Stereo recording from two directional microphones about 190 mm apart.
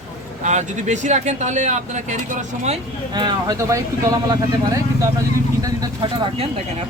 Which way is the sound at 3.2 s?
20° right (ahead or behind).